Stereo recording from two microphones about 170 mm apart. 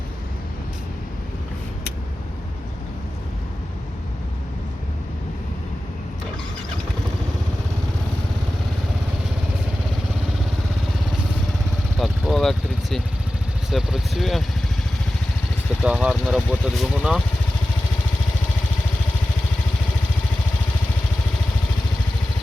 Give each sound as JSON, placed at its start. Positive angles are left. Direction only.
{"t": 11.9, "sound": "vehicle", "side_deg": 0}
{"t": 13.7, "sound": "speech", "side_deg": 0}
{"t": 15.8, "sound": "speech", "side_deg": -5}